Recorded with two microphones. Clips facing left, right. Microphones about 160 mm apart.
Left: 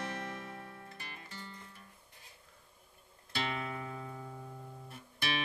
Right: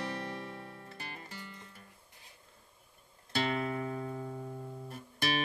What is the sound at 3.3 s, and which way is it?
Music, 40° right (ahead or behind).